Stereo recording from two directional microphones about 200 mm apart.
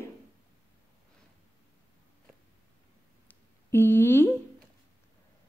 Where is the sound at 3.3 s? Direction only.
10° left (ahead or behind).